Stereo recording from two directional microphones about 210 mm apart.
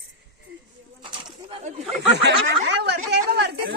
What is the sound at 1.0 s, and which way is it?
Bird, 25° right (ahead or behind).